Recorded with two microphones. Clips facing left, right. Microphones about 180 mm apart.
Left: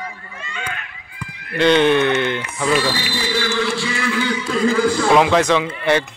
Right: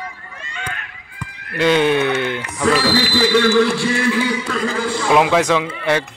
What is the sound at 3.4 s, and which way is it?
A man's voice, 50° right (ahead or behind).